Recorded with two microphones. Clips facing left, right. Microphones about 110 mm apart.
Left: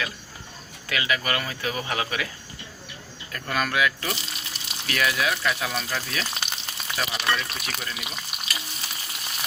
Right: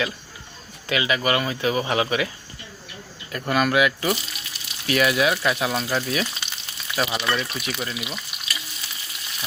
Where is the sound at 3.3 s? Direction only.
20° right (ahead or behind).